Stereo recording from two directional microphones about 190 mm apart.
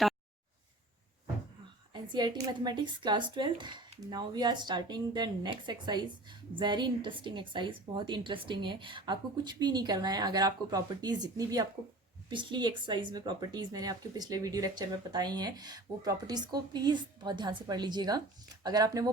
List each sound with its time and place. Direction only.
1.9 s speech: 25° right (ahead or behind)